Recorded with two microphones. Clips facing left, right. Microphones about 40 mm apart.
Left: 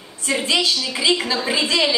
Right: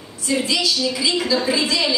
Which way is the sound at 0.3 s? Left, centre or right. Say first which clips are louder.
Left 1 dB; left.